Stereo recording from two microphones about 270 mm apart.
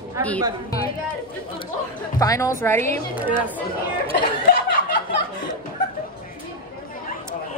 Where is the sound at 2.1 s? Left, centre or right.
Centre.